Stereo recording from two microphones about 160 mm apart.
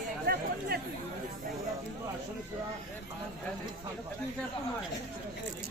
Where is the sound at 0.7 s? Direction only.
70° right (ahead or behind).